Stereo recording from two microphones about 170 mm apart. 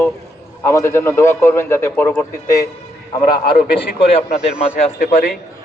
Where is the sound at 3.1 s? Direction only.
25° left (ahead or behind).